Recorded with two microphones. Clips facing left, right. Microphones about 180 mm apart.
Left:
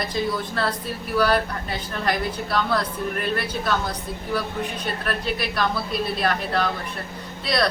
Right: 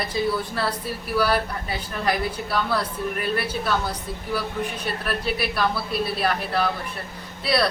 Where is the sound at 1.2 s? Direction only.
10° right (ahead or behind).